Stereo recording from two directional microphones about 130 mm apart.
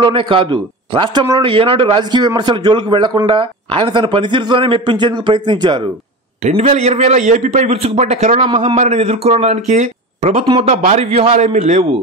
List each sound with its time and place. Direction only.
0.0 s a man's voice: 40° right (ahead or behind)
6.5 s speech: 55° right (ahead or behind)